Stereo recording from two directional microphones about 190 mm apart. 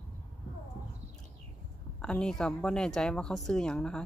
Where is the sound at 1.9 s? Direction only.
5° left (ahead or behind).